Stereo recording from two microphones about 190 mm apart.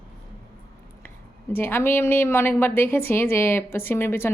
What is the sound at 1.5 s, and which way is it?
A woman's voice, 10° left (ahead or behind).